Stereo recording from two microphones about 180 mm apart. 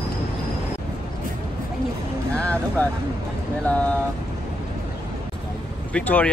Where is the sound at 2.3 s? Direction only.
5° left (ahead or behind).